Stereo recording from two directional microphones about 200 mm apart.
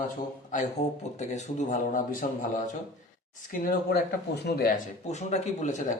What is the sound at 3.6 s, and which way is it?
Speech, 50° left (ahead or behind).